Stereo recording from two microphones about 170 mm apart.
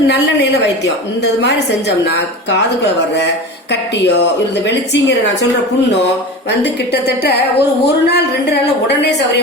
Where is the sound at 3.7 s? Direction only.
90° left.